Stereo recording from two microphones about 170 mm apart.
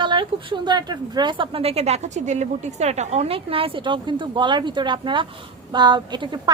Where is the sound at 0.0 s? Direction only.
30° right (ahead or behind).